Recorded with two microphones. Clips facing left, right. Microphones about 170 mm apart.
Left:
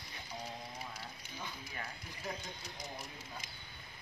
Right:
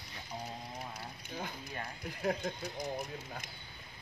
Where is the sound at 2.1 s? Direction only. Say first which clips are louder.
Right 13 dB; 60° right (ahead or behind).